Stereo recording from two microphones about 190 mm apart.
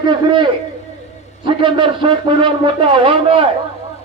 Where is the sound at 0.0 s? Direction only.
25° right (ahead or behind).